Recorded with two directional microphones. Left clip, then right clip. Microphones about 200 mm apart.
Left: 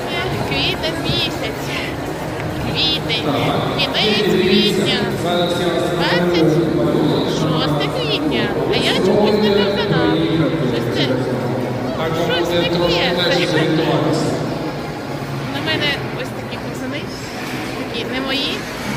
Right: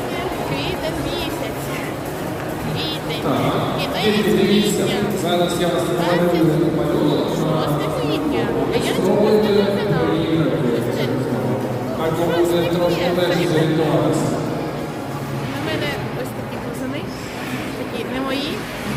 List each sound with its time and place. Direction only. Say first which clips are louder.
2.7 s a woman's voice: left 9 dB; 5° right (ahead or behind)
12.3 s a woman's voice: left 1 dB; centre (ahead or behind)